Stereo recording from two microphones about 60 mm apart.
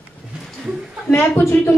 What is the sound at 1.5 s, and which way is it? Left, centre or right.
Speech, left.